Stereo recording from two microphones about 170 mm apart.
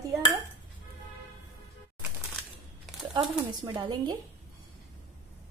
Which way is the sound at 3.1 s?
25° right (ahead or behind).